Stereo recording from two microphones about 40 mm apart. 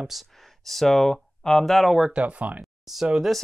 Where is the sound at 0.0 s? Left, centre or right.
Centre.